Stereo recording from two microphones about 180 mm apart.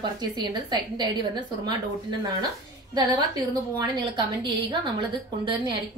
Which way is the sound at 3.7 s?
25° right (ahead or behind).